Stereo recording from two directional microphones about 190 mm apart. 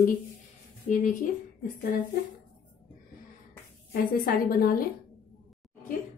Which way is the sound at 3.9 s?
50° left (ahead or behind).